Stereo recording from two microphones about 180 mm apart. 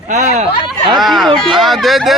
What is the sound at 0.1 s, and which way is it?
Speech, 40° right (ahead or behind).